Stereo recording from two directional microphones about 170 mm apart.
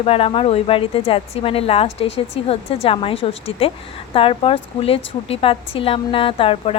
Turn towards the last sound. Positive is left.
turn(degrees=30)  # may be behind; listen again after turning